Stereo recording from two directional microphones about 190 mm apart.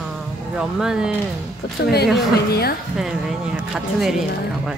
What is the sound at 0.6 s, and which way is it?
Speech, 5° right (ahead or behind).